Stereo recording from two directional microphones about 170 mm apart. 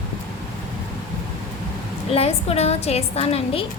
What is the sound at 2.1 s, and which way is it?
A woman's voice, 35° left (ahead or behind).